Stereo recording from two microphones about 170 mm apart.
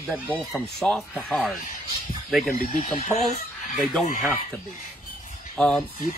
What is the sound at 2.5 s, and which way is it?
Speech, 55° left (ahead or behind).